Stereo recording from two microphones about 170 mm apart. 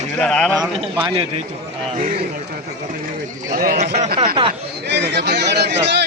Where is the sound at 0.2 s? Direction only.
5° left (ahead or behind).